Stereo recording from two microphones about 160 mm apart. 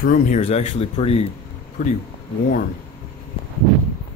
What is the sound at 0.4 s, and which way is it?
Speech, 40° left (ahead or behind).